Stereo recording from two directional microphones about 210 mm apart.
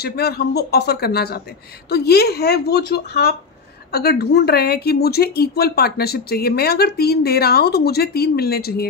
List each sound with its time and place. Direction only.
0.0 s speech: 50° left (ahead or behind)